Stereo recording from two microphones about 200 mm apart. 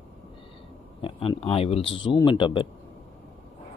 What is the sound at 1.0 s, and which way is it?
Speech, 25° left (ahead or behind).